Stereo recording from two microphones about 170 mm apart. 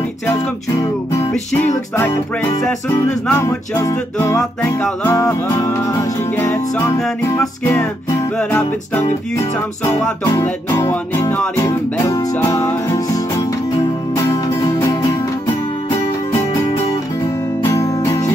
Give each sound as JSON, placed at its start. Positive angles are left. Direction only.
{"t": 2.9, "sound": "music", "side_deg": 15}
{"t": 17.7, "sound": "music", "side_deg": 20}